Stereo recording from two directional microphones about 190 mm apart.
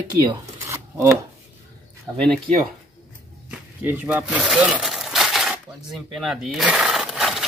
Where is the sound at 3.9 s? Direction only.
5° right (ahead or behind).